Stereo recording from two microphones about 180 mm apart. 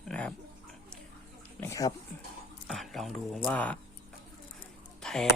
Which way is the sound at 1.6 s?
15° left (ahead or behind).